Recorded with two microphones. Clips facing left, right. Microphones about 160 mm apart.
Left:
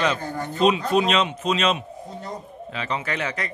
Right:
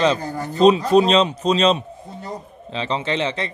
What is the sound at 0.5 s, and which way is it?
Speech, 35° right (ahead or behind).